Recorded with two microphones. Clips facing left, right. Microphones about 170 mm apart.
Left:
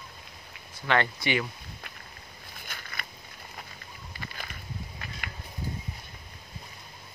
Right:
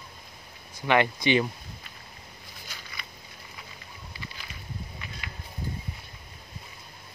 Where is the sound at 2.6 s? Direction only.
55° left (ahead or behind).